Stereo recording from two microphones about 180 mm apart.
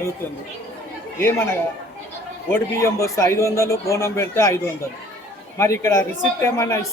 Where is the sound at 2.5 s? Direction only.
15° left (ahead or behind).